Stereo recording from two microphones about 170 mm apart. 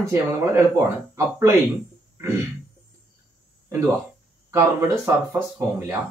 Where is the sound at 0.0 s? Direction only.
15° right (ahead or behind).